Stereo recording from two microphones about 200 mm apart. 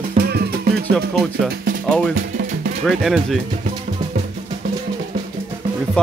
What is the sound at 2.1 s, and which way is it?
Music, 45° right (ahead or behind).